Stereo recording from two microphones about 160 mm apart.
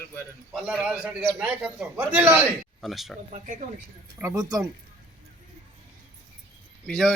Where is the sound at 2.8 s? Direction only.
Centre (ahead or behind).